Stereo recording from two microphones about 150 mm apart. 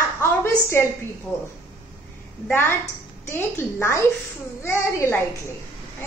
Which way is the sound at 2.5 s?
15° left (ahead or behind).